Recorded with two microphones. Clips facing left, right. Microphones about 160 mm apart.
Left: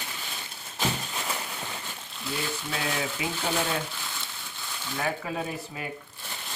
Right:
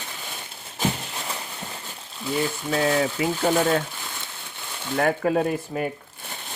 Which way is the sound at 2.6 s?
50° right (ahead or behind).